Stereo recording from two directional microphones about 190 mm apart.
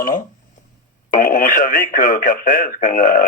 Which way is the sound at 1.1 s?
50° left (ahead or behind).